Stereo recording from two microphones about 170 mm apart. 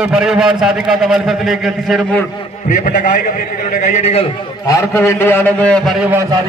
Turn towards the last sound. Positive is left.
turn(degrees=-15)  # may be behind; listen again after turning